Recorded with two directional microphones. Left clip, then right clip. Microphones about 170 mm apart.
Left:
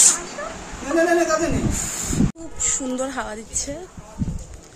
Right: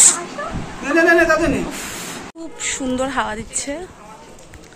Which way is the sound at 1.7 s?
10° left (ahead or behind).